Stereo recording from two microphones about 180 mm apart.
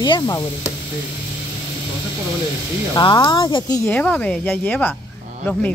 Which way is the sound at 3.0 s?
25° left (ahead or behind).